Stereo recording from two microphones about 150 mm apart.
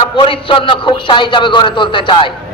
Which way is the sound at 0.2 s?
35° left (ahead or behind).